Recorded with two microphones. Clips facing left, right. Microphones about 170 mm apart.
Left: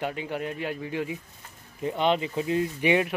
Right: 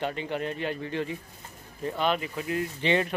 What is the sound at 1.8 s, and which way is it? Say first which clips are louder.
Speech: left 3 dB; 20° left (ahead or behind).